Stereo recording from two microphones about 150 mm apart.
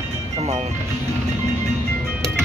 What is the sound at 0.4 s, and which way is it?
Music, 45° right (ahead or behind).